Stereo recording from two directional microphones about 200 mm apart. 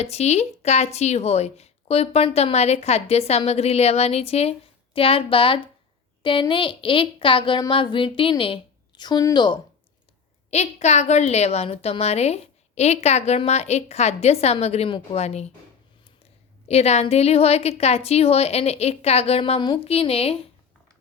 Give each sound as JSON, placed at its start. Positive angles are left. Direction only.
{"t": 0.0, "sound": "a woman's voice", "side_deg": 30}
{"t": 10.5, "sound": "speech", "side_deg": 35}
{"t": 16.6, "sound": "speech", "side_deg": 30}